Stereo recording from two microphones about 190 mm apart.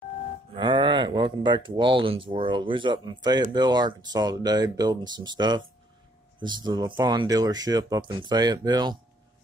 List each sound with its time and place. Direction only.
0.6 s speech: 25° right (ahead or behind)